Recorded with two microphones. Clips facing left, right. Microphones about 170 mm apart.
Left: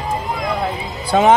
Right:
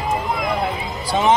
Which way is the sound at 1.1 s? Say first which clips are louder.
Left 4 dB; 55° left (ahead or behind).